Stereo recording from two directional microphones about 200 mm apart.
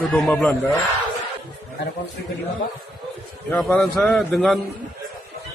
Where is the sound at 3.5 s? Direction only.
5° left (ahead or behind).